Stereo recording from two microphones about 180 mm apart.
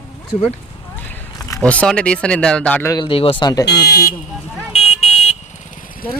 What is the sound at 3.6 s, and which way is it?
Speech, 65° left (ahead or behind).